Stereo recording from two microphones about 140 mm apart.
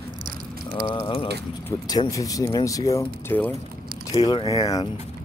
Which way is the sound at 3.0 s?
10° left (ahead or behind).